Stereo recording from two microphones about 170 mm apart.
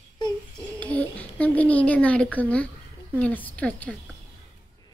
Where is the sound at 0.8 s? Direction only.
10° left (ahead or behind).